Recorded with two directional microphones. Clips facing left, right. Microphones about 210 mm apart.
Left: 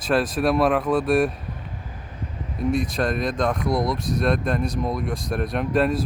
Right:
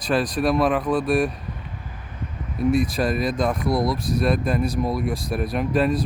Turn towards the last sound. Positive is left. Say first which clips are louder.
# even
turn(degrees=0)  # may be behind; listen again after turning